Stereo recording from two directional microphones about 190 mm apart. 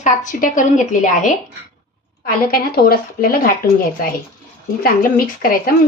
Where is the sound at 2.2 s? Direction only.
55° left (ahead or behind).